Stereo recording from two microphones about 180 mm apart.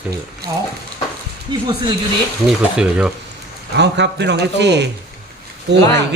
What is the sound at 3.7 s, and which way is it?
A man's voice, 70° right (ahead or behind).